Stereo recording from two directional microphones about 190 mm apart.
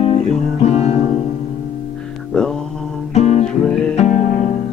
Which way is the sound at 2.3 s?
5° left (ahead or behind).